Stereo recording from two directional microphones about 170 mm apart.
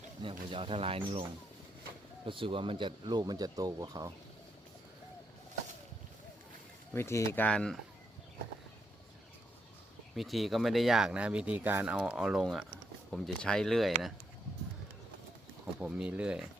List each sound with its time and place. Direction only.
0.4 s speech: 30° right (ahead or behind)
6.9 s speech: 15° left (ahead or behind)
10.2 s speech: centre (ahead or behind)
15.8 s speech: 10° right (ahead or behind)